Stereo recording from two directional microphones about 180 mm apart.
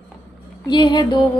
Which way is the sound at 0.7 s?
25° left (ahead or behind).